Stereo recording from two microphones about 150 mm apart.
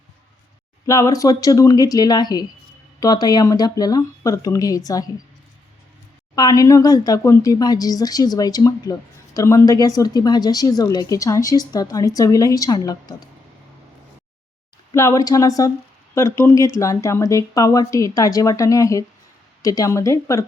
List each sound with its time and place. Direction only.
0.9 s speech: 20° left (ahead or behind)
6.3 s speech: 25° left (ahead or behind)
14.9 s speech: 20° left (ahead or behind)